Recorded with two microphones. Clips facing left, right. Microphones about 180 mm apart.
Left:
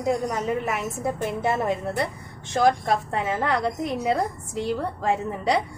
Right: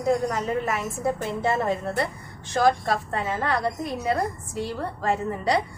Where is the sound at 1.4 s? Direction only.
15° left (ahead or behind).